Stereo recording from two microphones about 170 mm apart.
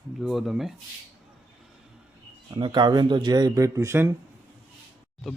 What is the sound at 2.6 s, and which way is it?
Speech, 25° right (ahead or behind).